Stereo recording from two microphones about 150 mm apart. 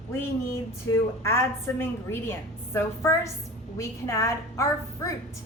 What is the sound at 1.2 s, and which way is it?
A woman's voice, 15° left (ahead or behind).